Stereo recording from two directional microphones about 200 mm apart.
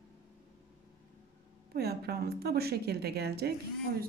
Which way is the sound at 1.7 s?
50° right (ahead or behind).